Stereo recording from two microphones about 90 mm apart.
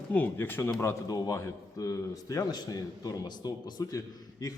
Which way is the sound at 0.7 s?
35° left (ahead or behind).